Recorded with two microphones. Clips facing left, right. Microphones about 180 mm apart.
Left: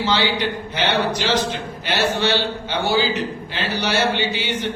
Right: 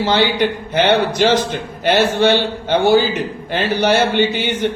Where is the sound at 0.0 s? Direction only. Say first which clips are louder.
Right 5 dB; 50° right (ahead or behind).